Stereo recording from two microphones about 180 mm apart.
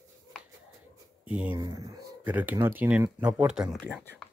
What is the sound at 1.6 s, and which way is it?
Speech, 20° right (ahead or behind).